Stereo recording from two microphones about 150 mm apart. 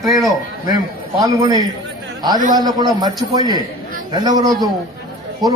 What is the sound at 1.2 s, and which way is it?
A man's voice, 25° right (ahead or behind).